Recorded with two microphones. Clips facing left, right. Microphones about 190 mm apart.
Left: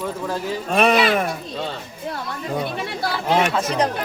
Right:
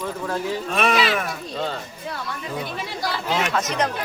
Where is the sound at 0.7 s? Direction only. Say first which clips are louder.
Left 6 dB; 40° left (ahead or behind).